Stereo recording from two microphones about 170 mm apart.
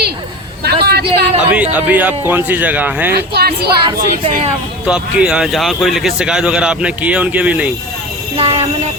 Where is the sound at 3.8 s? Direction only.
30° right (ahead or behind).